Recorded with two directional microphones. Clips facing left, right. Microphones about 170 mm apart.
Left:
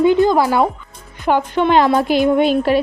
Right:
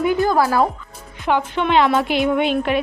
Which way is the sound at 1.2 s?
45° left (ahead or behind).